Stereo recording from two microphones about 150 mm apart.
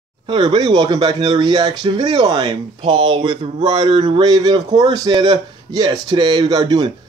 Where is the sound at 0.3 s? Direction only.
30° right (ahead or behind).